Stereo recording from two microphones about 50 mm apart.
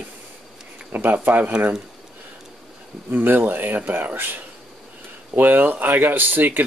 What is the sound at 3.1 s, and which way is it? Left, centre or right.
Speech, right.